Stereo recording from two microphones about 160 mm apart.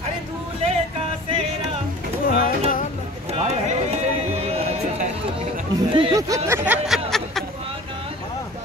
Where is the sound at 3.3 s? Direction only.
40° right (ahead or behind).